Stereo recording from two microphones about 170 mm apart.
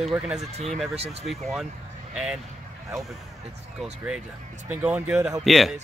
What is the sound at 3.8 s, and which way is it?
Speech, 5° right (ahead or behind).